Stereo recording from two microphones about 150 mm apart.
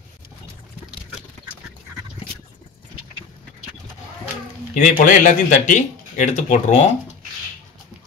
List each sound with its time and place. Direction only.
4.7 s speech: 60° left (ahead or behind)